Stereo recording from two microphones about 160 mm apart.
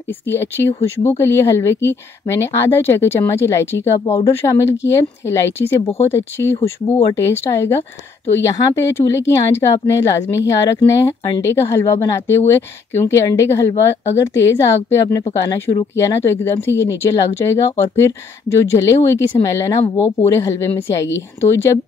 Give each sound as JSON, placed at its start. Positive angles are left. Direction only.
{"t": 0.3, "sound": "a woman's voice", "side_deg": 15}